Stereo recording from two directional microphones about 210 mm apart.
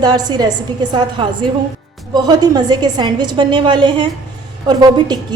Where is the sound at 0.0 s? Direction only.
20° right (ahead or behind).